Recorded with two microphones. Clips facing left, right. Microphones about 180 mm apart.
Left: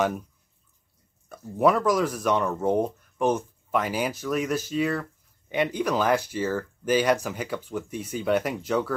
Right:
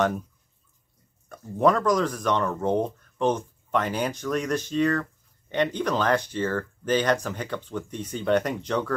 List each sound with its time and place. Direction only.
1.3 s speech: 10° left (ahead or behind)